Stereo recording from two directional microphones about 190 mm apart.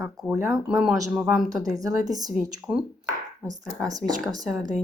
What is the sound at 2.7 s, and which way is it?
Speech, 5° right (ahead or behind).